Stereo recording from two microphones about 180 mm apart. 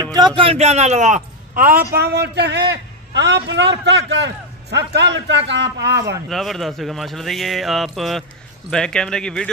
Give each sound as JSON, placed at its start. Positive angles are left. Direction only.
{"t": 0.1, "sound": "a man's voice", "side_deg": -25}
{"t": 6.2, "sound": "speech", "side_deg": 0}